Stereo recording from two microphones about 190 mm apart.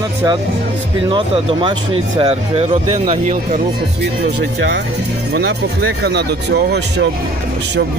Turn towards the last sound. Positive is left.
turn(degrees=-60)  # may be behind; listen again after turning